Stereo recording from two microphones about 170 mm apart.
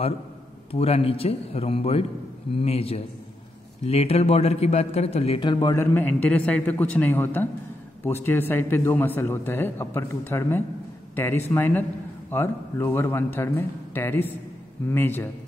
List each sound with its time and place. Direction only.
0.7 s a man's voice: 35° left (ahead or behind); by 15.2 s 10° left (ahead or behind)